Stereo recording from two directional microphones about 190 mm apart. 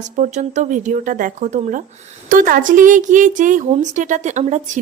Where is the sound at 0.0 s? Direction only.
40° right (ahead or behind).